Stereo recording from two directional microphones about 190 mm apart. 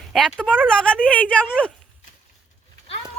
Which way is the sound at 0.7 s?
5° left (ahead or behind).